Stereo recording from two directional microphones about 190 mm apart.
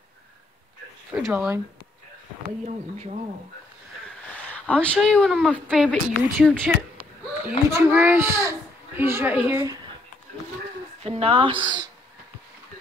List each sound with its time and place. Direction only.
1.1 s speech: 5° right (ahead or behind)
2.6 s speech: 35° right (ahead or behind)
4.4 s speech: 5° left (ahead or behind)
7.4 s a child's voice: 10° right (ahead or behind)
11.0 s speech: 30° right (ahead or behind)